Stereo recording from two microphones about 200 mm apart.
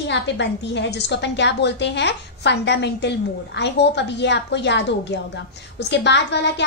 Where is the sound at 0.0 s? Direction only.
60° left (ahead or behind).